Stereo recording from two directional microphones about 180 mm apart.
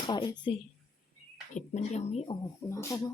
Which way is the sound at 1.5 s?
40° left (ahead or behind).